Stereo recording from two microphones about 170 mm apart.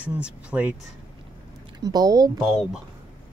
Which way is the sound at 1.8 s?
20° right (ahead or behind).